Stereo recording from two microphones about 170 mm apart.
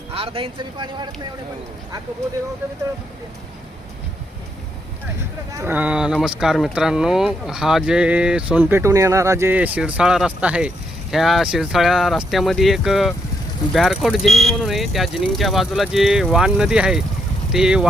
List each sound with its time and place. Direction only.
0.1 s speech: 35° right (ahead or behind)
5.5 s speech: 10° right (ahead or behind)